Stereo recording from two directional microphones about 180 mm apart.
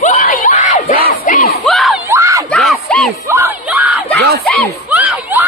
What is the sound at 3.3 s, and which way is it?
Crowd, 15° right (ahead or behind).